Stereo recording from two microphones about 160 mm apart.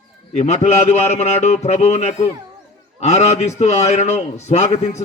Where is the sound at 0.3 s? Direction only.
45° left (ahead or behind).